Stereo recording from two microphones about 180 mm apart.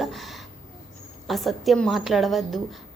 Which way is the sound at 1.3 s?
Centre (ahead or behind).